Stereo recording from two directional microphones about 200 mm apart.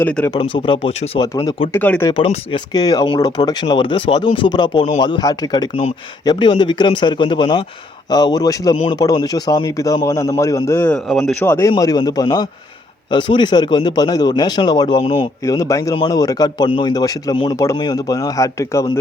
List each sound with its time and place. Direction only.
0.0 s speech: 5° left (ahead or behind)
0.3 s speech: 25° left (ahead or behind)
2.1 s speech: 30° left (ahead or behind)